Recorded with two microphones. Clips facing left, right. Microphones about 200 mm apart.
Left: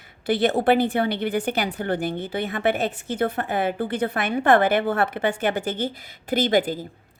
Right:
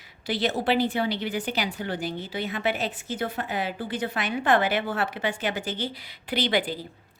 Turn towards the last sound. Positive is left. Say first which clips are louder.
# left 5 dB
turn(degrees=45)  # may be behind; listen again after turning